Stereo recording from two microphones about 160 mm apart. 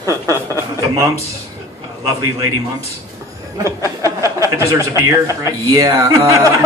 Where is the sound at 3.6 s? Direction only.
20° right (ahead or behind).